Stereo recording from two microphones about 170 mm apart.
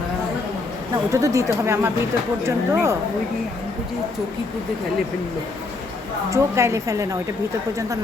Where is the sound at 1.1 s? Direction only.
20° right (ahead or behind).